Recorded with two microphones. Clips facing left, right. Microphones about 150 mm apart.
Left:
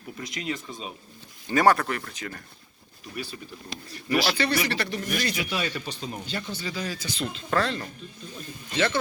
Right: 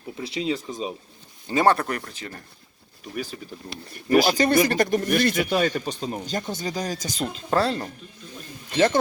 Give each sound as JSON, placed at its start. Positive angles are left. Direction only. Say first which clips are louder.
{"t": 0.2, "sound": "speech", "louder": "right 6 dB", "side_deg": -35}
{"t": 3.9, "sound": "speech", "louder": "right 6 dB", "side_deg": -45}